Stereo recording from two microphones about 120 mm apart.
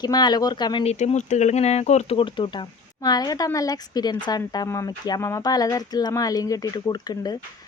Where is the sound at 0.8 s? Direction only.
70° left (ahead or behind).